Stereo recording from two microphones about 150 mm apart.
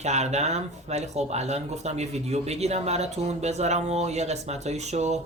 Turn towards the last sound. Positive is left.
turn(degrees=-50)  # may be behind; listen again after turning